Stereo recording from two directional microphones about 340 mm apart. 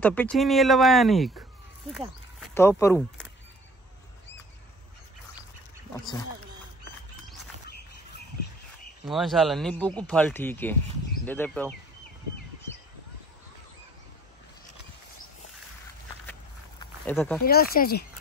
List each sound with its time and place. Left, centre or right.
0.0 s speech: centre
9.1 s speech: centre
17.0 s speech: centre
17.5 s speech: left